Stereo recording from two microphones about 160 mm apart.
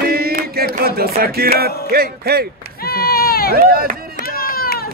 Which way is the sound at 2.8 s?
70° left (ahead or behind).